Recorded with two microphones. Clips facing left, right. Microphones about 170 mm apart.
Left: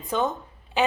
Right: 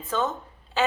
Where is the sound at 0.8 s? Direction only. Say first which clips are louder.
Left 1 dB; 15° left (ahead or behind).